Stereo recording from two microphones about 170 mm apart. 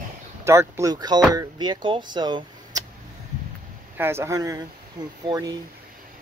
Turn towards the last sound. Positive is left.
turn(degrees=-20)  # may be behind; listen again after turning